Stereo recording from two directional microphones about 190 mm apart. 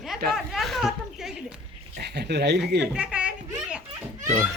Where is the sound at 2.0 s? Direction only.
60° right (ahead or behind).